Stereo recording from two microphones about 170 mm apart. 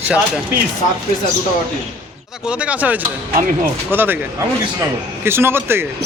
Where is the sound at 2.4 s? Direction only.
5° right (ahead or behind).